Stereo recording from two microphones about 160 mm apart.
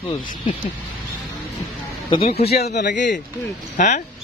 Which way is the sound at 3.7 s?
50° left (ahead or behind).